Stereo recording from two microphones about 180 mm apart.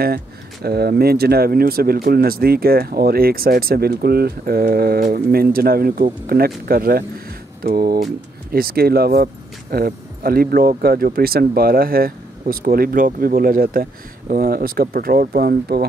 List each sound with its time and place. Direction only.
0.0 s speech: 60° right (ahead or behind)